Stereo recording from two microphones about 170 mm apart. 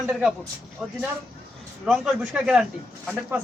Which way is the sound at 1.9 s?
5° right (ahead or behind).